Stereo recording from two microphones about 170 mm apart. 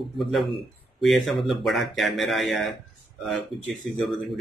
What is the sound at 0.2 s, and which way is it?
Speech, centre (ahead or behind).